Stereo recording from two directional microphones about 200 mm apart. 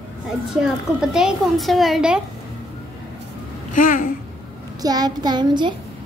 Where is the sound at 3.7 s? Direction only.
40° left (ahead or behind).